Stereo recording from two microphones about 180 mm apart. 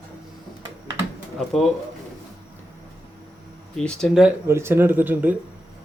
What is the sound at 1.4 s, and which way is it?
Speech, centre (ahead or behind).